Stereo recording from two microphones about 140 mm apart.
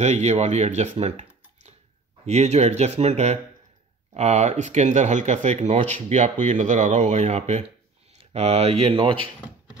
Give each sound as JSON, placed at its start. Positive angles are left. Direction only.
{"t": 0.0, "sound": "speech", "side_deg": -55}